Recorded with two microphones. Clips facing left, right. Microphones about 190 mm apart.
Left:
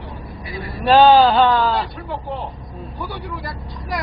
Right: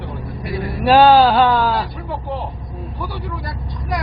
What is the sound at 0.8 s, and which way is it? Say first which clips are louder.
Speech: right 1 dB; 5° right (ahead or behind).